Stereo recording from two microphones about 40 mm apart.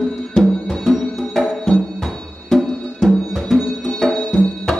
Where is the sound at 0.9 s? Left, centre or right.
Centre.